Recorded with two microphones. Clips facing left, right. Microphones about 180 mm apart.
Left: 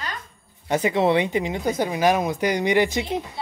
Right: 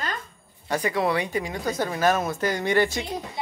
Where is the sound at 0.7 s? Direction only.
20° left (ahead or behind).